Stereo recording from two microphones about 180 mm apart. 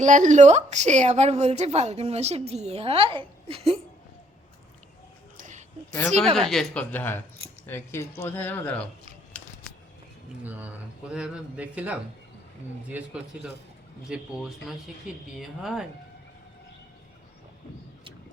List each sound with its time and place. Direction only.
0.0 s a woman's voice: 45° right (ahead or behind)
5.4 s a sound: 45° right (ahead or behind)
6.5 s speech: 5° left (ahead or behind)
10.4 s speech: 10° right (ahead or behind)